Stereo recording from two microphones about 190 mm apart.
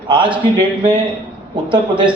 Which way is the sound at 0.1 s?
25° right (ahead or behind).